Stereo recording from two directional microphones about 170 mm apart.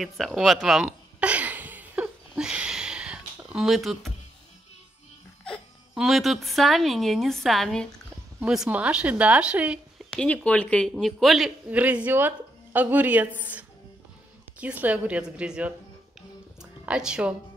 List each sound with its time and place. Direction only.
0.0 s a sound: centre (ahead or behind)
5.4 s speech: centre (ahead or behind)
10.1 s speech: 10° left (ahead or behind)
16.8 s speech: 5° right (ahead or behind)